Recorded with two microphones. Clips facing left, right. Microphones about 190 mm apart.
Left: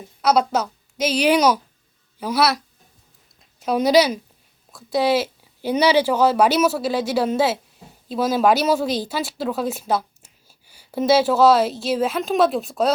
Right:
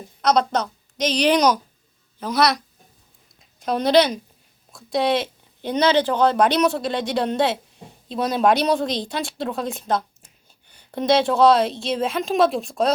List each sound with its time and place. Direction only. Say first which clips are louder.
0.2 s a woman's voice: left 1 dB; 5° left (ahead or behind)